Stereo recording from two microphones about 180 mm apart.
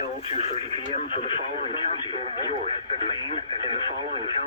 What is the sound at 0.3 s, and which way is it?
Speech, 35° left (ahead or behind).